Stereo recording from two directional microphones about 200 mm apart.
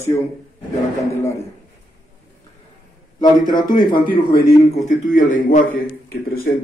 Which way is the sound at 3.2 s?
20° left (ahead or behind).